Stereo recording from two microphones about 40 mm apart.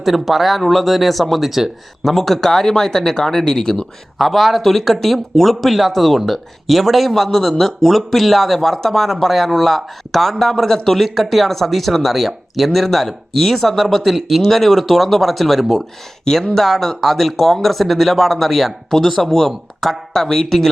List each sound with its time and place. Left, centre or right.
0.0 s speech: centre
4.2 s speech: centre
16.2 s speech: centre